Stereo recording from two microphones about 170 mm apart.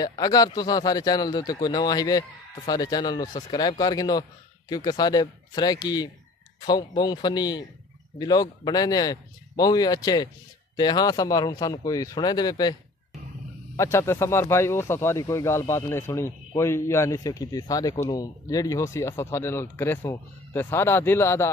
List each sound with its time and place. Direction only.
0.0 s speech: 25° left (ahead or behind)
13.7 s speech: 15° left (ahead or behind)